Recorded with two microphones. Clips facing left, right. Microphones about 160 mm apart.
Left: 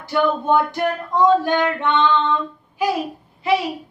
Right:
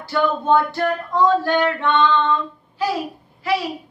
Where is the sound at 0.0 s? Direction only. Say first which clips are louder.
Left 1 dB; 15° left (ahead or behind).